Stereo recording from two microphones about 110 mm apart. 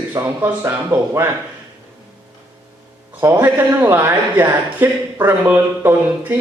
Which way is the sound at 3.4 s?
20° right (ahead or behind).